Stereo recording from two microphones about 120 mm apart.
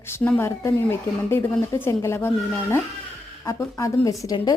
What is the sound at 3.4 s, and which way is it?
Speech, 25° left (ahead or behind).